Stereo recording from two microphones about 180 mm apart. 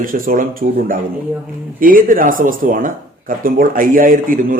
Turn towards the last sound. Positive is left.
turn(degrees=-50)  # may be behind; listen again after turning